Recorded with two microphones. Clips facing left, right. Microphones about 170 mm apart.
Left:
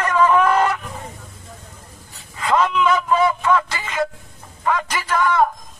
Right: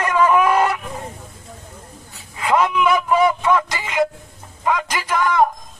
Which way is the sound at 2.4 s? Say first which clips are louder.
Right 1 dB; 10° right (ahead or behind).